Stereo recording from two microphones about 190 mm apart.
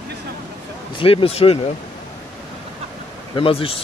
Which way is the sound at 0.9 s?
30° left (ahead or behind).